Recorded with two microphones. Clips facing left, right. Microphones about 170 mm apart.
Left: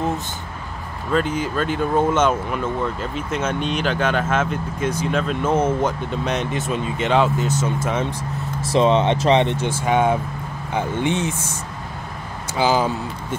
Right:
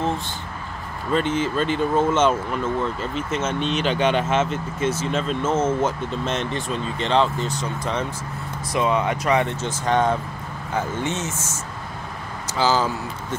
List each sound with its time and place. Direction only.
1.1 s speech: 10° left (ahead or behind)
5.9 s speech: centre (ahead or behind)
8.7 s speech: 25° left (ahead or behind)
9.7 s speech: 10° left (ahead or behind)
12.5 s speech: 15° left (ahead or behind)